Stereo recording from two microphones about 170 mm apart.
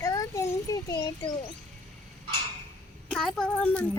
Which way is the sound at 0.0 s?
20° left (ahead or behind).